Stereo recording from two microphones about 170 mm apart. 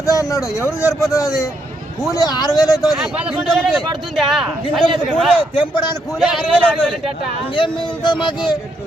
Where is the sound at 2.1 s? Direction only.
20° left (ahead or behind).